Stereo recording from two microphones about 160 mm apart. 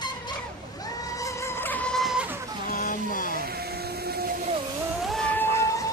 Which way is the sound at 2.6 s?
60° left (ahead or behind).